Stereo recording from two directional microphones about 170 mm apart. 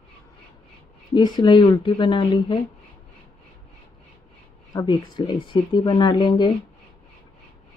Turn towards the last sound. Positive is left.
turn(degrees=25)  # may be behind; listen again after turning